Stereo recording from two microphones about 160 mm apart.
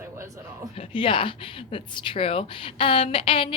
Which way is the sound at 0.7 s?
35° left (ahead or behind).